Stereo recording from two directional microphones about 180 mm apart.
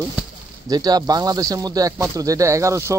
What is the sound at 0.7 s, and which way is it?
Speech, 20° right (ahead or behind).